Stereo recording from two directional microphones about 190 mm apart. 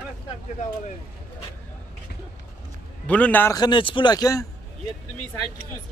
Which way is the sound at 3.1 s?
10° left (ahead or behind).